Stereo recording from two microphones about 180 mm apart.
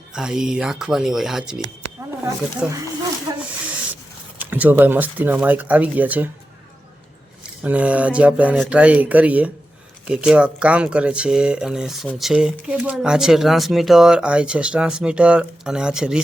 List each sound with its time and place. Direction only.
0.1 s speech: 5° right (ahead or behind)
3.3 s snake: 20° right (ahead or behind)
4.4 s speech: 10° right (ahead or behind)
7.6 s speech: 5° right (ahead or behind)